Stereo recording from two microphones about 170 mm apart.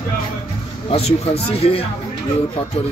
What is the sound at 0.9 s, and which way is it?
Speech, 35° left (ahead or behind).